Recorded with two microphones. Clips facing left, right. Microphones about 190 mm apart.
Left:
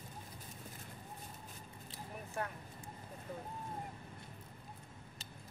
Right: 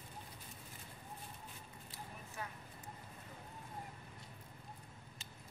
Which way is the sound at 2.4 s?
55° left (ahead or behind).